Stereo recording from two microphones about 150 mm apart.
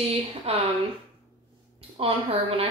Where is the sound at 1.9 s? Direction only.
40° right (ahead or behind).